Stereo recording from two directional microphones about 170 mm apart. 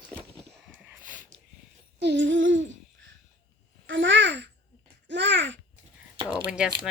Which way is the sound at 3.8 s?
90° right.